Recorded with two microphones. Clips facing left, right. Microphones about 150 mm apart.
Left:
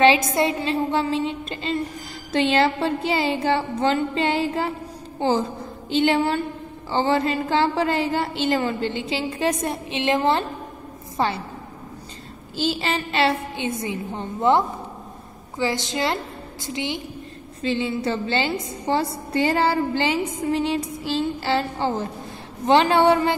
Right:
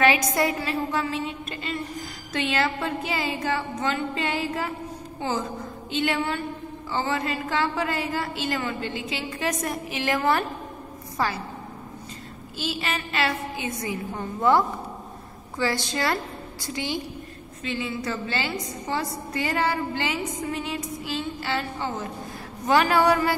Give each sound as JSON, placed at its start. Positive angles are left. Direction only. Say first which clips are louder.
{"t": 0.0, "sound": "a woman's voice", "louder": "left 4 dB", "side_deg": 25}
{"t": 12.5, "sound": "a woman's voice", "louder": "left 6 dB", "side_deg": 30}
{"t": 17.6, "sound": "a woman's voice", "louder": "left 6 dB", "side_deg": 30}